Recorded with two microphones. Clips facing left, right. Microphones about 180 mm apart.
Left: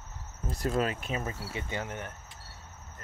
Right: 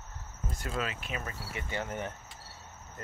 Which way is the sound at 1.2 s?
25° left (ahead or behind).